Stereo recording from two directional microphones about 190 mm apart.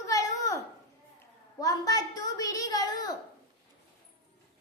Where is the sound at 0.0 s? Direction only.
15° left (ahead or behind).